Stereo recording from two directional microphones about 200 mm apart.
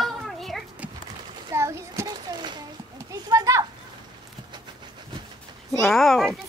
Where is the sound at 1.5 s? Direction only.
15° right (ahead or behind).